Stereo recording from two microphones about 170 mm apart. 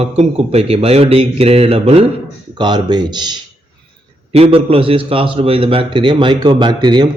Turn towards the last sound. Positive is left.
turn(degrees=-25)  # may be behind; listen again after turning